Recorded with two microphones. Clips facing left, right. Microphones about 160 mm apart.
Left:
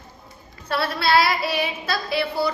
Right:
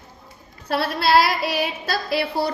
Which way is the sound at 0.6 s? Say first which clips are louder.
Right 2 dB; 45° right (ahead or behind).